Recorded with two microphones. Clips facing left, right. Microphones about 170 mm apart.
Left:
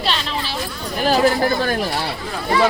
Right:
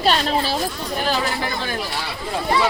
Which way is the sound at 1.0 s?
40° left (ahead or behind).